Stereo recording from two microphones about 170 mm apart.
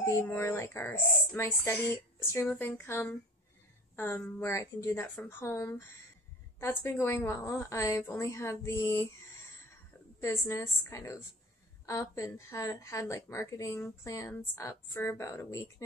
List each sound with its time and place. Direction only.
0.0 s a woman's voice: 15° left (ahead or behind)
10.2 s a woman's voice: 15° left (ahead or behind)